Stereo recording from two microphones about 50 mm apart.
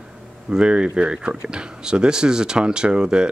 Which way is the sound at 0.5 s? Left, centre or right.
Centre.